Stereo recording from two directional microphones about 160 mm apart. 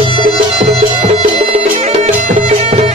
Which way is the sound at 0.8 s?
40° right (ahead or behind).